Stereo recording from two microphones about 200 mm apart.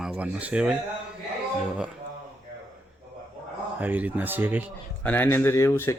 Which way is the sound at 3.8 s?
10° right (ahead or behind).